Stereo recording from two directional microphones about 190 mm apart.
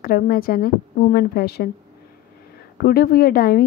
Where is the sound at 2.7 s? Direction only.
50° left (ahead or behind).